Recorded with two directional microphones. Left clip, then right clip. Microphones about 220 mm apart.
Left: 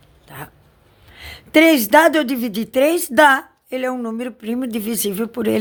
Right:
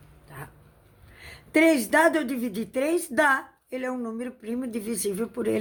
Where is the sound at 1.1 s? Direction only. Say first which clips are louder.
Left 9 dB; 45° left (ahead or behind).